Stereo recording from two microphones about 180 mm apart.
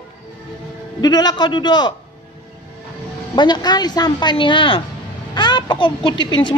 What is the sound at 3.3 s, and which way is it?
Speech, 25° left (ahead or behind).